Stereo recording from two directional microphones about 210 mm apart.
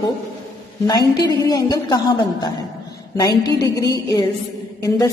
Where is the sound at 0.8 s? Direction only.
15° left (ahead or behind).